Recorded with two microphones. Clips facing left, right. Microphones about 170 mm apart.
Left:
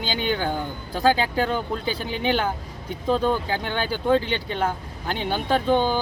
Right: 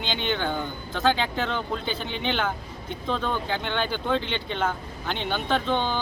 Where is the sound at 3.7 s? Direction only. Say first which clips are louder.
Left 6 dB; 5° left (ahead or behind).